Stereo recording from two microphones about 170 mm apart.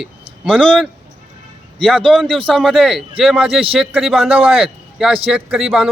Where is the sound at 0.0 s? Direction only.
5° right (ahead or behind).